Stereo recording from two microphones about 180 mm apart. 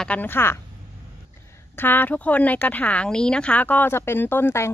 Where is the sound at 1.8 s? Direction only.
10° left (ahead or behind).